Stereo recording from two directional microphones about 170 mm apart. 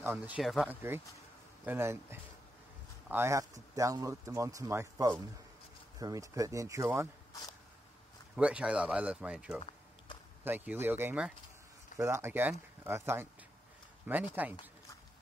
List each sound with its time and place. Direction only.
0.0 s speech: 10° right (ahead or behind)
8.4 s speech: 5° right (ahead or behind)
14.3 s speech: 10° right (ahead or behind)